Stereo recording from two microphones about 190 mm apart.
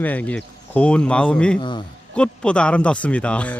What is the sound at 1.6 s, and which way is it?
Speech, 25° left (ahead or behind).